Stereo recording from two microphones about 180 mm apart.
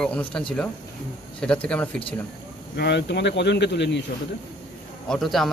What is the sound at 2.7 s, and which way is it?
Speech, 70° left (ahead or behind).